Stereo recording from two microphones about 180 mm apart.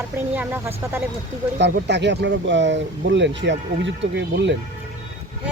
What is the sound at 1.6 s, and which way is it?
Speech, 75° right (ahead or behind).